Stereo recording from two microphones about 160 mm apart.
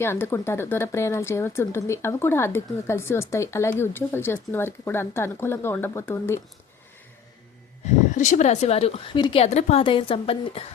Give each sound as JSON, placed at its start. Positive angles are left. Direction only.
{"t": 0.0, "sound": "speech", "side_deg": 15}
{"t": 8.1, "sound": "a woman's voice", "side_deg": 50}